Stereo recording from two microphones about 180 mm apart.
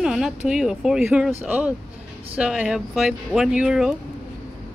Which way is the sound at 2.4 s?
5° right (ahead or behind).